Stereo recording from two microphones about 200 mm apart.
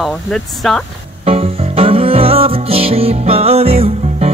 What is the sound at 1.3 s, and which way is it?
Music, 30° right (ahead or behind).